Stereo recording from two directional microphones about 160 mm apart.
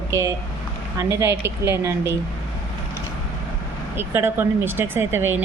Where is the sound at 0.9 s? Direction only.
20° right (ahead or behind).